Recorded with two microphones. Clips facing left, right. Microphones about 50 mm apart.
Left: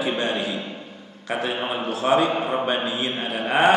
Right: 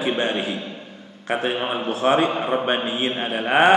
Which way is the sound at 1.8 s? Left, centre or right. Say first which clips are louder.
Right 1 dB; right.